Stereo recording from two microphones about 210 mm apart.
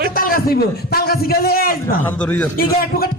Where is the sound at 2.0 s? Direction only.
5° left (ahead or behind).